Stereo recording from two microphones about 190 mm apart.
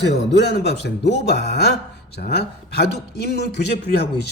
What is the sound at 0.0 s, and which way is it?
A man's voice, 60° left (ahead or behind).